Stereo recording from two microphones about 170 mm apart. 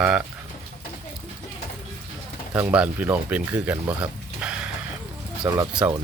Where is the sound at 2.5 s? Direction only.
10° right (ahead or behind).